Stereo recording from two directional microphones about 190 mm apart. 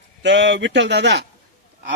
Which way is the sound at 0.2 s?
70° right (ahead or behind).